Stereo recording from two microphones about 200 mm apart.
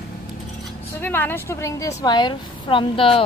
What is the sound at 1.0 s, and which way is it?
A woman's voice, 10° left (ahead or behind).